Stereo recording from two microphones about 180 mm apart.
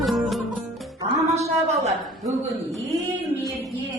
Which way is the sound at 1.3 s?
35° right (ahead or behind).